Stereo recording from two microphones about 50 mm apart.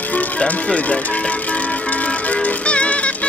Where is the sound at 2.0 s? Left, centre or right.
Left.